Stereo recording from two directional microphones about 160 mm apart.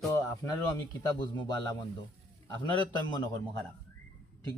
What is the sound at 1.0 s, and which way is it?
Speech, 25° left (ahead or behind).